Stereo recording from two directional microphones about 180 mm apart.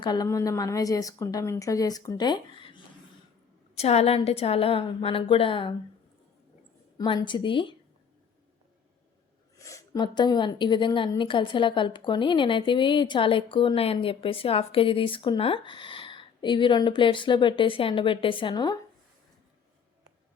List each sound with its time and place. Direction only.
0.0 s a woman's voice: 20° left (ahead or behind)
3.8 s a woman's voice: 35° left (ahead or behind)
7.0 s a woman's voice: 25° left (ahead or behind)
9.6 s a woman's voice: 20° left (ahead or behind)